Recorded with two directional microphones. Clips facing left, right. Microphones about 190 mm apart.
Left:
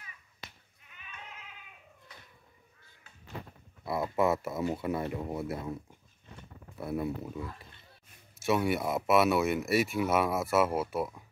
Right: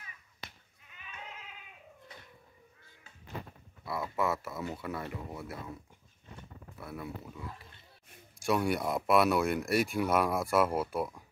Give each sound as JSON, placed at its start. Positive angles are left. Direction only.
{"t": 3.8, "sound": "speech", "side_deg": 25}
{"t": 6.8, "sound": "speech", "side_deg": 25}
{"t": 8.4, "sound": "speech", "side_deg": 5}